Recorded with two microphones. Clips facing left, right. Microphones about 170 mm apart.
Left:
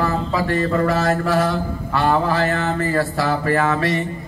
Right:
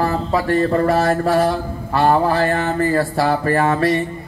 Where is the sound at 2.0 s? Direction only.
40° right (ahead or behind).